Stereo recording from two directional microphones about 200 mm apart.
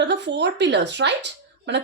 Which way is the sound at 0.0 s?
60° right (ahead or behind).